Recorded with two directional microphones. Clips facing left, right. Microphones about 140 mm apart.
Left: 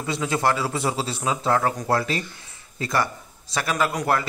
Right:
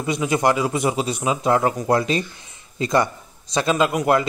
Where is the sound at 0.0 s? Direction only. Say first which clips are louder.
Right 4 dB; 15° right (ahead or behind).